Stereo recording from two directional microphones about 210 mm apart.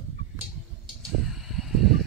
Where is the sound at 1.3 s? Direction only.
Centre (ahead or behind).